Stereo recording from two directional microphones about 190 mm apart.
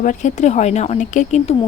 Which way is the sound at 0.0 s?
40° left (ahead or behind).